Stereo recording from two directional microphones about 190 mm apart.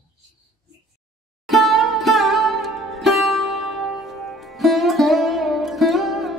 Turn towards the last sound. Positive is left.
turn(degrees=0)  # may be behind; listen again after turning